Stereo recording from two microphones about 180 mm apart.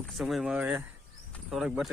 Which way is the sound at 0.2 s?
Centre (ahead or behind).